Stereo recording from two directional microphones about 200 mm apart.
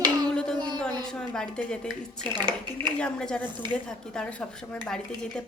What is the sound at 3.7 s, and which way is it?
A woman's voice, 5° left (ahead or behind).